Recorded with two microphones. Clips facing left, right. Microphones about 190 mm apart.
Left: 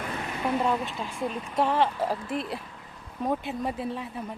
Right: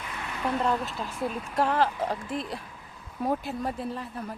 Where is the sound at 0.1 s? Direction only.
30° left (ahead or behind).